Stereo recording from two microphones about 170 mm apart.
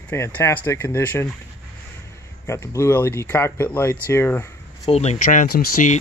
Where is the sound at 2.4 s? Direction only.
15° left (ahead or behind).